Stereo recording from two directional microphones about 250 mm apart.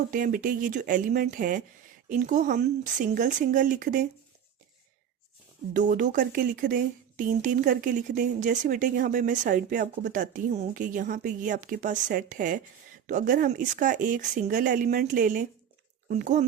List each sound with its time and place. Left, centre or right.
0.1 s speech: right
5.7 s speech: right